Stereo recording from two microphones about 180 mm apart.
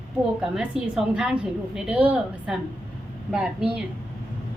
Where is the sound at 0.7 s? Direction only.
5° right (ahead or behind).